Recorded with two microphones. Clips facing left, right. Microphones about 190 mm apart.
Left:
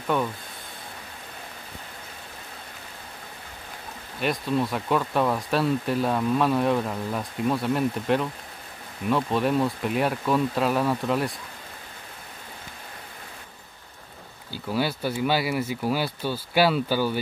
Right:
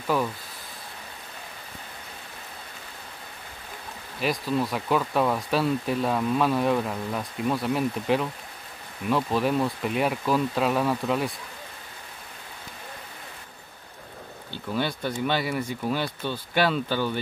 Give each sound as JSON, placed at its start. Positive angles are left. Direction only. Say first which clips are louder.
{"t": 0.0, "sound": "speech", "louder": "even", "side_deg": 0}
{"t": 4.2, "sound": "speech", "louder": "left 1 dB", "side_deg": 0}
{"t": 14.5, "sound": "speech", "louder": "left 2 dB", "side_deg": 5}